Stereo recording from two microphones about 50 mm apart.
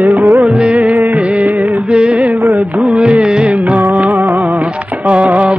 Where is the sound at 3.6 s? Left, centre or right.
Right.